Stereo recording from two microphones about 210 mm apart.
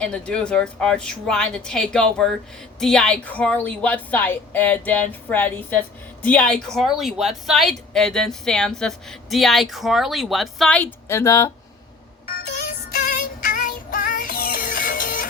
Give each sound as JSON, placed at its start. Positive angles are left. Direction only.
{"t": 0.0, "sound": "a woman's voice", "side_deg": 5}
{"t": 12.6, "sound": "music", "side_deg": 45}